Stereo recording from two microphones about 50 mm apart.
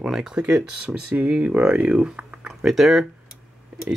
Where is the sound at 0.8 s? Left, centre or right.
Right.